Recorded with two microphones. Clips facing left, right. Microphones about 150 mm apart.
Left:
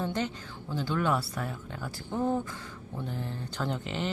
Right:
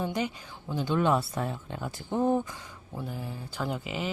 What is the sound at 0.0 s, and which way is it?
Speech, 10° right (ahead or behind).